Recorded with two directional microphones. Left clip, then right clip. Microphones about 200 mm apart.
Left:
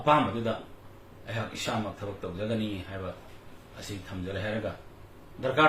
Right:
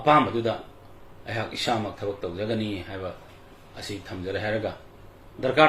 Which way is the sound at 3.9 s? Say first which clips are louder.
Right 6 dB; 40° right (ahead or behind).